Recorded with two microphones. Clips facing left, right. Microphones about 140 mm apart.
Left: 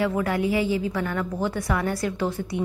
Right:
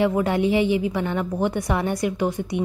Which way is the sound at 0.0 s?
25° right (ahead or behind).